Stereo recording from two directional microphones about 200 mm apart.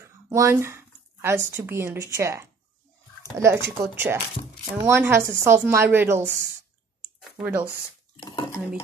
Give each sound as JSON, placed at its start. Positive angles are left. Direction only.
{"t": 0.0, "sound": "a woman's voice", "side_deg": -15}
{"t": 7.2, "sound": "a sound", "side_deg": -5}
{"t": 8.2, "sound": "dishes", "side_deg": 20}